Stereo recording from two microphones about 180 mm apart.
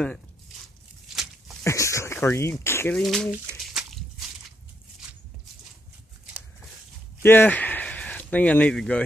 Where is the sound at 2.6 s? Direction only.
15° left (ahead or behind).